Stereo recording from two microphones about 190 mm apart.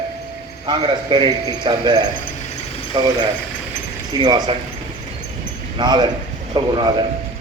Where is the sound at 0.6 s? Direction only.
20° right (ahead or behind).